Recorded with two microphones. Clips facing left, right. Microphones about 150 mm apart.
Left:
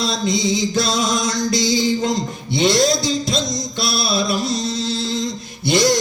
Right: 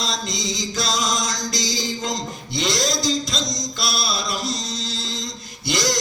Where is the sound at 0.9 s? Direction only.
55° left (ahead or behind).